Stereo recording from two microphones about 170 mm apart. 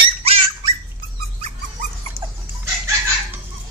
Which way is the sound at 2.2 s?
15° right (ahead or behind).